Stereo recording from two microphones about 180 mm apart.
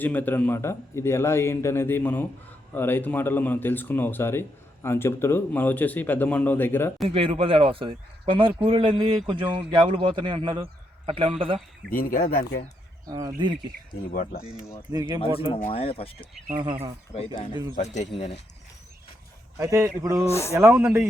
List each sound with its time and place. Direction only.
0.0 s speech: 10° left (ahead or behind)
7.1 s a man's voice: 30° right (ahead or behind)
11.9 s speech: 50° left (ahead or behind)
13.1 s a man's voice: 20° right (ahead or behind)
14.1 s speech: 50° left (ahead or behind)
15.2 s speech: 30° left (ahead or behind)
17.5 s a man's voice: 25° right (ahead or behind)
17.8 s speech: 40° left (ahead or behind)
19.5 s a man's voice: 15° right (ahead or behind)
20.2 s speech: 15° left (ahead or behind)
20.6 s speech: 15° right (ahead or behind)